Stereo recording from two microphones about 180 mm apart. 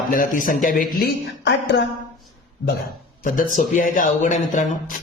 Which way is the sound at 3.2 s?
50° left (ahead or behind).